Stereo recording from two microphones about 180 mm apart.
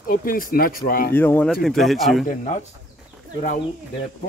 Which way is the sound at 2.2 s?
40° left (ahead or behind).